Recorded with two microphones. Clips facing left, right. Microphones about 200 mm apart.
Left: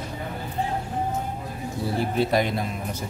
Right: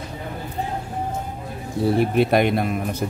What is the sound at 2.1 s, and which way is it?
Speech, 65° right (ahead or behind).